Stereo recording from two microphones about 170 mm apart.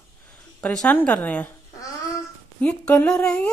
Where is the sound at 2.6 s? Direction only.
10° left (ahead or behind).